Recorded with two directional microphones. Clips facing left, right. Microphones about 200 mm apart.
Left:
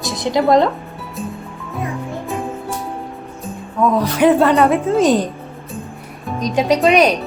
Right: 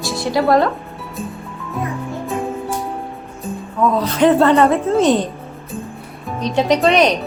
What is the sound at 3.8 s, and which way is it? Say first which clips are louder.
A woman's voice: left 1 dB; 10° left (ahead or behind).